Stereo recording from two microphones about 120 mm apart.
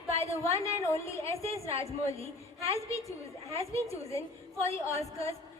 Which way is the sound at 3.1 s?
25° left (ahead or behind).